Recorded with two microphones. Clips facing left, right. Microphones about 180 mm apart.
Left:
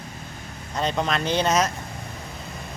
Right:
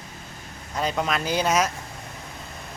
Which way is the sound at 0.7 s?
5° right (ahead or behind).